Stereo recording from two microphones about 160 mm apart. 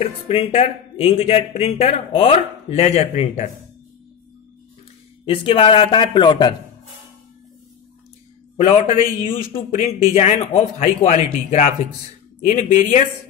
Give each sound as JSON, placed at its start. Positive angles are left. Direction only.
{"t": 0.0, "sound": "speech", "side_deg": 35}
{"t": 5.2, "sound": "speech", "side_deg": 35}
{"t": 8.5, "sound": "a man's voice", "side_deg": 45}